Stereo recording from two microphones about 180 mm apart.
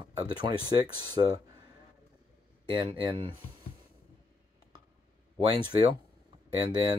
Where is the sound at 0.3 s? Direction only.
25° right (ahead or behind).